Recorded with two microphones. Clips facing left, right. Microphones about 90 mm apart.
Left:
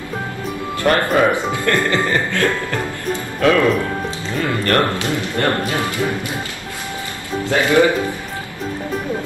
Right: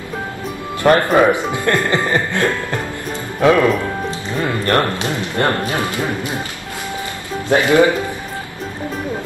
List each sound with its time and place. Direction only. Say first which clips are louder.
0.8 s speech: right 3 dB; 20° right (ahead or behind)
4.6 s speech: even; 20° right (ahead or behind)
7.4 s speech: right 2 dB; 20° right (ahead or behind)